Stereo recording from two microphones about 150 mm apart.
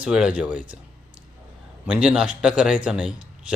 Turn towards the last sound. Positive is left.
turn(degrees=-5)  # may be behind; listen again after turning